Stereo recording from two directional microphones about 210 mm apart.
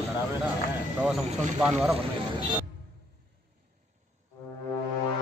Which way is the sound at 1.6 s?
Centre (ahead or behind).